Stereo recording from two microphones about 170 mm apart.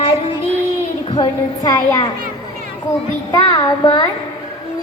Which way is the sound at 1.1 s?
30° left (ahead or behind).